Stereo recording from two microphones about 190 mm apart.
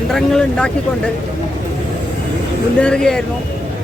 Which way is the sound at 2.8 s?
5° left (ahead or behind).